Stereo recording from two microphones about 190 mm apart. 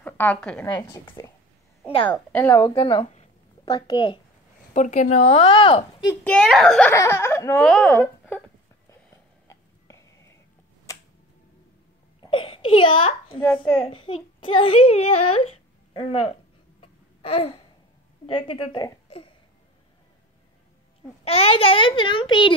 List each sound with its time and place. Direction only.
0.0 s a woman's voice: 10° left (ahead or behind)
0.7 s a child's voice: 25° left (ahead or behind)
4.7 s speech: 40° left (ahead or behind)
5.3 s a child's voice: 30° left (ahead or behind)
6.2 s a child's voice: 5° left (ahead or behind)
9.5 s a sound: 15° left (ahead or behind)
12.2 s a sound: 25° left (ahead or behind)
13.8 s a child's voice: 30° left (ahead or behind)
16.8 s babbling: 30° left (ahead or behind)
18.2 s a child's voice: 30° left (ahead or behind)
19.0 s a sound: 30° left (ahead or behind)
21.2 s a child's voice: 30° left (ahead or behind)